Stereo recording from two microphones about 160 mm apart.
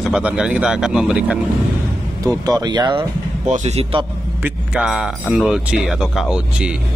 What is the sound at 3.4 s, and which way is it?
Speech, 45° right (ahead or behind).